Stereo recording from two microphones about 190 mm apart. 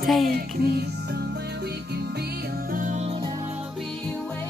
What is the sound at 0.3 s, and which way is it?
Music, 55° right (ahead or behind).